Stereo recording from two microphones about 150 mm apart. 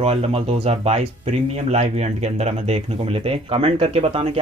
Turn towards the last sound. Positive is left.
turn(degrees=-40)  # may be behind; listen again after turning